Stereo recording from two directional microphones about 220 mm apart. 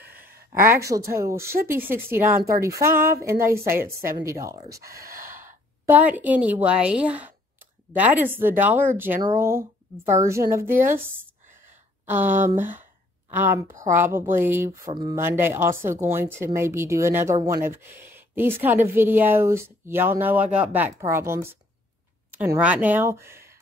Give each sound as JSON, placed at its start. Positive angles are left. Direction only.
{"t": 0.2, "sound": "a sound", "side_deg": -40}
{"t": 0.7, "sound": "speech", "side_deg": -15}
{"t": 5.0, "sound": "gasp", "side_deg": -40}
{"t": 5.9, "sound": "speech", "side_deg": -10}